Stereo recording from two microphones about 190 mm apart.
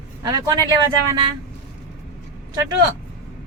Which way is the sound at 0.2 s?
20° right (ahead or behind).